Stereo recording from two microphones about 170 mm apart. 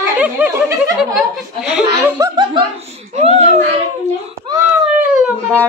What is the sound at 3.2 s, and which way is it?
Baby cry, 35° right (ahead or behind).